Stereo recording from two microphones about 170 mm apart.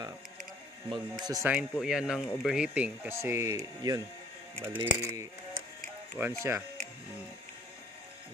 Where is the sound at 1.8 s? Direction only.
5° right (ahead or behind); by 4.0 s 20° right (ahead or behind).